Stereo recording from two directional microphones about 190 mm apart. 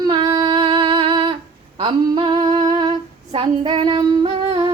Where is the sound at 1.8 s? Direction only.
25° right (ahead or behind).